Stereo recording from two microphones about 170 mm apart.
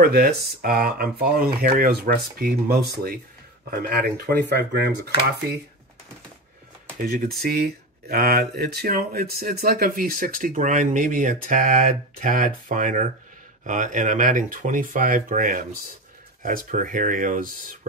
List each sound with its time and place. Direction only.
0.0 s speech: 65° right (ahead or behind)
4.3 s speech: 80° right
7.0 s speech: 60° right (ahead or behind)